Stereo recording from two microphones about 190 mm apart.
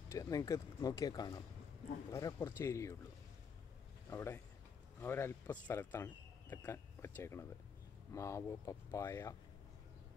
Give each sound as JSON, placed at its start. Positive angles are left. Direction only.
{"t": 0.1, "sound": "speech", "side_deg": 15}
{"t": 4.1, "sound": "speech", "side_deg": 15}